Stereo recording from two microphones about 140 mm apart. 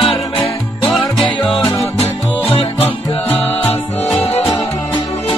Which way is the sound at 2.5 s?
45° left (ahead or behind).